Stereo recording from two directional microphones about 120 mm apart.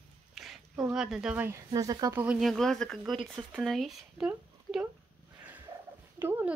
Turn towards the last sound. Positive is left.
turn(degrees=-20)  # may be behind; listen again after turning